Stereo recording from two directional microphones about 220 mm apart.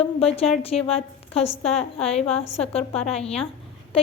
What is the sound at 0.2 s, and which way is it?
A woman's voice, 25° left (ahead or behind).